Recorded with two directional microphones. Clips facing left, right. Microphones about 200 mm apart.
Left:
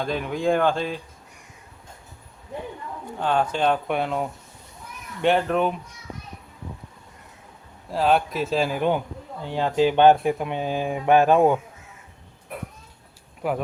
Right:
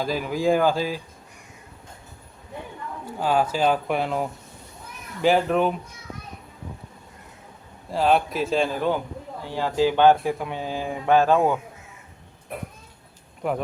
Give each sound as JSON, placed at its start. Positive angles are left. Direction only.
{"t": 0.0, "sound": "speech", "side_deg": -5}
{"t": 3.2, "sound": "speech", "side_deg": -5}
{"t": 7.9, "sound": "speech", "side_deg": 0}
{"t": 9.5, "sound": "speech", "side_deg": 20}
{"t": 13.4, "sound": "speech", "side_deg": 5}